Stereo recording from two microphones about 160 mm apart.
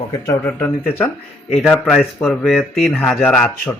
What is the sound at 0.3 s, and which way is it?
Speech, 10° left (ahead or behind).